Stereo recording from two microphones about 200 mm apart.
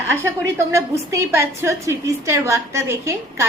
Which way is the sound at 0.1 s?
15° right (ahead or behind).